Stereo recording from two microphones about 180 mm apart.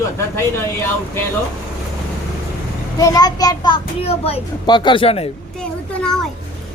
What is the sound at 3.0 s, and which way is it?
A child's voice, 20° left (ahead or behind).